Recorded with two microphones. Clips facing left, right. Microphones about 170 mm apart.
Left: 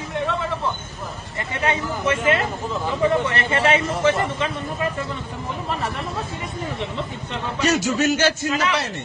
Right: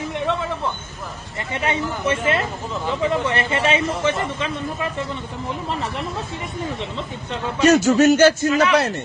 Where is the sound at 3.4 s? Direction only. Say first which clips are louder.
Even; 20° right (ahead or behind).